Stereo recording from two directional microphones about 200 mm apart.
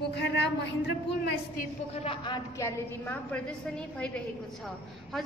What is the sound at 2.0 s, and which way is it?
A woman's voice, 25° left (ahead or behind).